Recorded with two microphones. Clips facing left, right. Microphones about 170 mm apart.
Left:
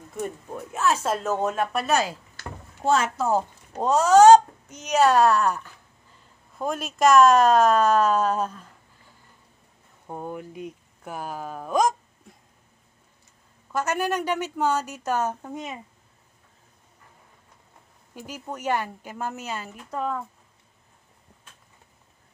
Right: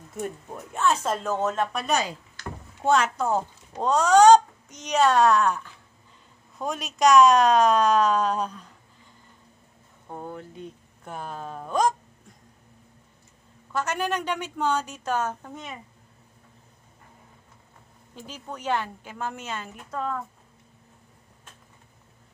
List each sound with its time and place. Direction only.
1.0 s a child's voice: 5° left (ahead or behind)
10.0 s a child's voice: 15° left (ahead or behind)
13.7 s a child's voice: 10° left (ahead or behind)
18.1 s a child's voice: 10° left (ahead or behind)